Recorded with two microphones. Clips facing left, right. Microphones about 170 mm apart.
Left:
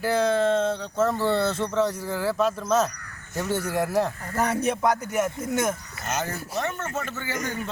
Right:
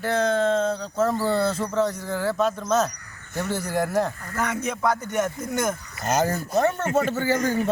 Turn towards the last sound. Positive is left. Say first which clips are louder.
# right 8 dB
turn(degrees=-40)  # may be behind; listen again after turning